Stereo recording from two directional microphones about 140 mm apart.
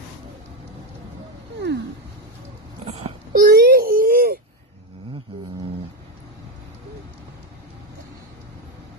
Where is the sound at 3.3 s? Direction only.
90° right.